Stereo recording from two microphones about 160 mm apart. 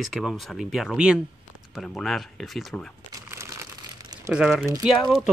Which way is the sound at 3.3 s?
15° right (ahead or behind).